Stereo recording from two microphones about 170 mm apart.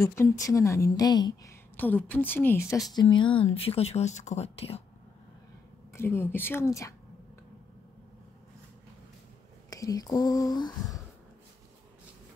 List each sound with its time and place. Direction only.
0.0 s a woman's voice: 15° left (ahead or behind)
3.0 s speech: 30° left (ahead or behind)
5.9 s a woman's voice: 15° left (ahead or behind)
9.7 s speech: 20° left (ahead or behind)